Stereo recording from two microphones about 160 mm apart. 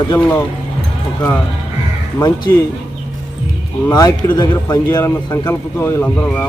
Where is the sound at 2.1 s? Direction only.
20° left (ahead or behind).